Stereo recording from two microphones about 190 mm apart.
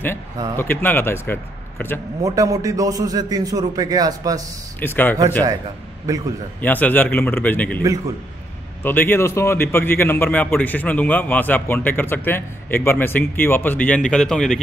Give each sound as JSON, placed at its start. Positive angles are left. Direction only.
{"t": 0.6, "sound": "a man's voice", "side_deg": 10}
{"t": 2.2, "sound": "a man's voice", "side_deg": -15}
{"t": 4.7, "sound": "a man's voice", "side_deg": 10}
{"t": 6.0, "sound": "a man's voice", "side_deg": -20}
{"t": 6.6, "sound": "a man's voice", "side_deg": 10}
{"t": 8.8, "sound": "a man's voice", "side_deg": 10}